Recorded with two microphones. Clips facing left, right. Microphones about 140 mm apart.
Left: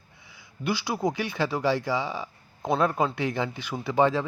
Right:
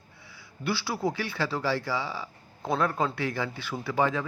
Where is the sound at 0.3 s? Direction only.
15° left (ahead or behind).